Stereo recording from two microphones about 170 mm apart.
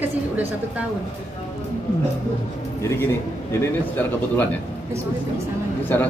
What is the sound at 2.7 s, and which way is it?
Speech, 15° left (ahead or behind).